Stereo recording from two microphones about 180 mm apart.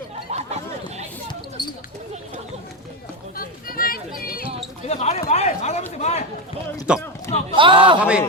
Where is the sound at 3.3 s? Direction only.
55° left (ahead or behind).